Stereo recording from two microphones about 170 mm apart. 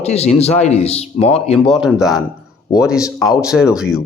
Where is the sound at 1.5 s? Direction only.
Centre (ahead or behind).